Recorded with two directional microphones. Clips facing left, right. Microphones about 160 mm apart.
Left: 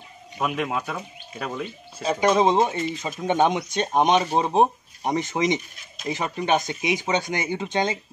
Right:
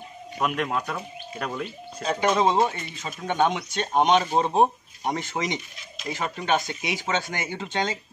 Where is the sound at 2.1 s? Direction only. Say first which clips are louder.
Left 2 dB; 15° left (ahead or behind).